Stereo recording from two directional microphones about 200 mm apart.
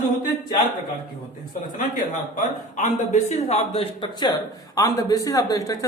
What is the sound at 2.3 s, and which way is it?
A man's voice, 40° left (ahead or behind).